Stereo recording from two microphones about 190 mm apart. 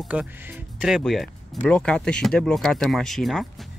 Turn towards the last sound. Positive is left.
turn(degrees=0)  # may be behind; listen again after turning